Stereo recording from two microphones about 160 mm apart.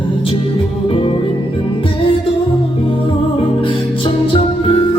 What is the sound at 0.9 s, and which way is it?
Music, 35° left (ahead or behind).